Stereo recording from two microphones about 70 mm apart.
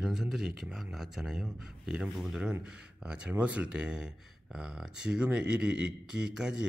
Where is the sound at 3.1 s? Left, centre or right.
Right.